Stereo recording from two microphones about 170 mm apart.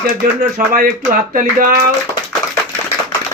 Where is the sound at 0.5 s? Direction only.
55° right (ahead or behind).